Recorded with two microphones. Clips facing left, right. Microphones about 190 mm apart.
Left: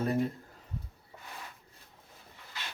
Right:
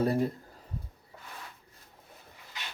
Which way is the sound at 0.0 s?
35° right (ahead or behind).